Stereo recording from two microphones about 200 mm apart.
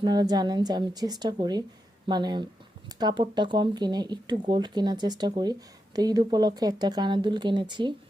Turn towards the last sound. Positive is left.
turn(degrees=-25)  # may be behind; listen again after turning